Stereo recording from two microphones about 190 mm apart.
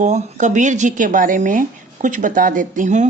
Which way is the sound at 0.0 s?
40° right (ahead or behind).